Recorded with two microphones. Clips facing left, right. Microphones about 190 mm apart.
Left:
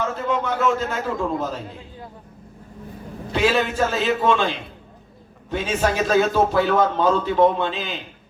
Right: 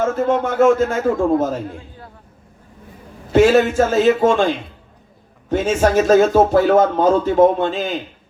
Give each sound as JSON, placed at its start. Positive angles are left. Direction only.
{"t": 0.0, "sound": "a man's voice", "side_deg": -50}
{"t": 3.3, "sound": "a man's voice", "side_deg": -45}